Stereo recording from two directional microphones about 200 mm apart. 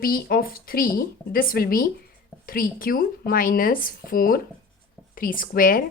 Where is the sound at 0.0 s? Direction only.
45° left (ahead or behind).